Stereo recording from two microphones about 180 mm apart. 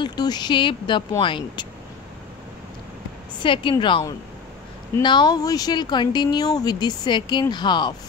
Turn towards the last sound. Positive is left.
turn(degrees=25)  # may be behind; listen again after turning